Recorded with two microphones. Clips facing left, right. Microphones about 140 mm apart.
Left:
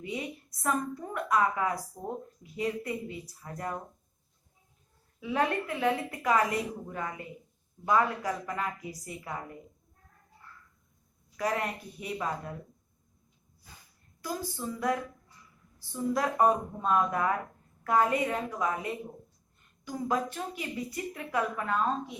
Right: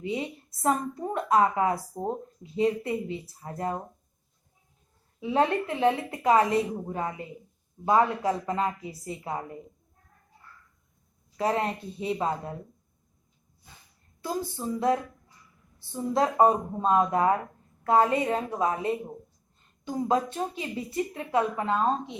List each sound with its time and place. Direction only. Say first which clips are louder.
0.0 s speech: right 5 dB; 25° right (ahead or behind)
5.2 s speech: right 4 dB; 25° right (ahead or behind)
11.3 s speech: right 4 dB; 25° right (ahead or behind)
14.2 s speech: right 4 dB; 25° right (ahead or behind)